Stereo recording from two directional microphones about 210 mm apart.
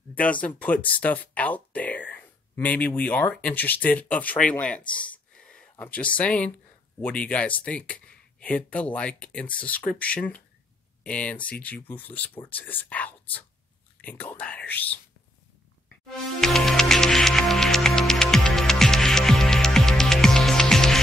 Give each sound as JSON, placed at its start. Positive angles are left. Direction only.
{"t": 0.1, "sound": "speech", "side_deg": 5}
{"t": 16.3, "sound": "music", "side_deg": 0}